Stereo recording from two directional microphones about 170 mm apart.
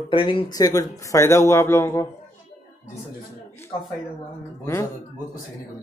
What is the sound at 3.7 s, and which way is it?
Speech, 35° left (ahead or behind).